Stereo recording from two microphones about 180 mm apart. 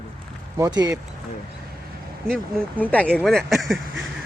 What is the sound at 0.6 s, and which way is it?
Speech, 20° right (ahead or behind).